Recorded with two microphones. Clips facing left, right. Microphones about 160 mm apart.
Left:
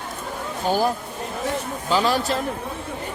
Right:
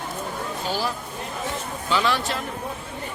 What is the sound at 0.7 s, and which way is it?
Speech, 50° left (ahead or behind).